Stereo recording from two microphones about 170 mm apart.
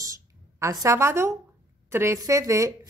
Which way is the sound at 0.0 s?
20° right (ahead or behind).